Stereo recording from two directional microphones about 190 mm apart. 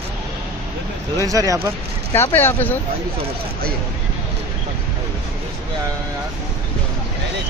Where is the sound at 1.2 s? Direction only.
20° right (ahead or behind).